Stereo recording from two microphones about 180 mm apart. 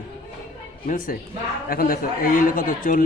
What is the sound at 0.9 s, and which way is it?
Speech, 50° left (ahead or behind).